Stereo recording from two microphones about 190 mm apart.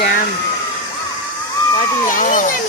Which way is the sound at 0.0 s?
50° left (ahead or behind).